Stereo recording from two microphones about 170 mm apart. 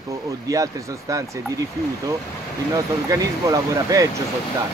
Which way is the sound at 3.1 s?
20° right (ahead or behind).